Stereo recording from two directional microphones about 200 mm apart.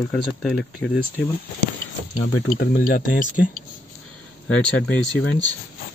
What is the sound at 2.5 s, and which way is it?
Speech, 50° left (ahead or behind).